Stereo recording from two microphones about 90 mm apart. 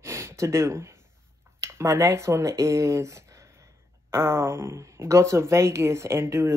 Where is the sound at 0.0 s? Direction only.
35° right (ahead or behind).